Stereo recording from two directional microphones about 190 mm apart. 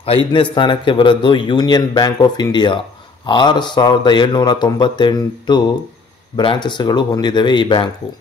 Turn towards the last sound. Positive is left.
turn(degrees=25)  # may be behind; listen again after turning